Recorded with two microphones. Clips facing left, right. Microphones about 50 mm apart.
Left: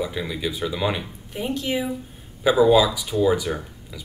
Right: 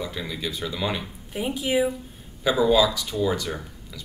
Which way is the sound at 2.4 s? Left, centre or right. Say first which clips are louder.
Left 3 dB; centre.